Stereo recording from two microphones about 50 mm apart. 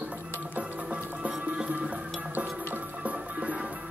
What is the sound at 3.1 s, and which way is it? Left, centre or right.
Music, right.